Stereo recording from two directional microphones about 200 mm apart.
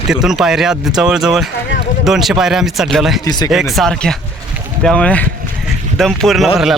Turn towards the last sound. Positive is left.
turn(degrees=0)  # may be behind; listen again after turning